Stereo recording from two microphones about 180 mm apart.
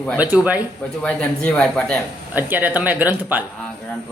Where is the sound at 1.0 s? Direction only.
5° left (ahead or behind).